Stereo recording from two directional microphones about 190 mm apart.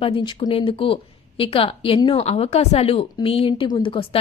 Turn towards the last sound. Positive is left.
turn(degrees=30)  # may be behind; listen again after turning